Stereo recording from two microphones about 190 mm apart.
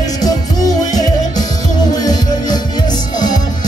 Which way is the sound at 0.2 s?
20° left (ahead or behind).